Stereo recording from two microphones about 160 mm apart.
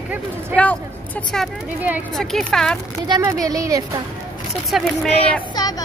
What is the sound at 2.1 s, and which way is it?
Speech, centre (ahead or behind).